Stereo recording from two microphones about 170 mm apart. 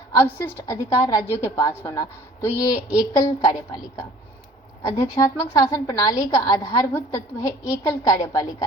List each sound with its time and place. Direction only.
0.1 s a woman's voice: 15° left (ahead or behind)
4.8 s a woman's voice: 20° left (ahead or behind)